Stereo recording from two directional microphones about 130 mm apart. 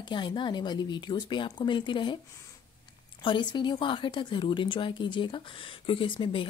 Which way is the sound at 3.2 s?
35° left (ahead or behind).